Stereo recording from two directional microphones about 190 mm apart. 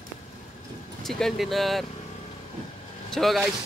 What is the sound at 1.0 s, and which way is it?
Speech, centre (ahead or behind).